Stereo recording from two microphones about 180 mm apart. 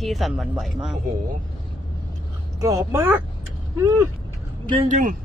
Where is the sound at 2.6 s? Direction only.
20° right (ahead or behind).